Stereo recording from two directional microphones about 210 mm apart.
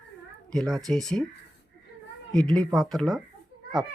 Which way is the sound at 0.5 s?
Centre (ahead or behind).